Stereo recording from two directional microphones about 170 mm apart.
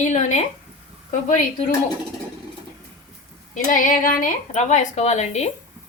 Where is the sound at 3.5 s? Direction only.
50° left (ahead or behind).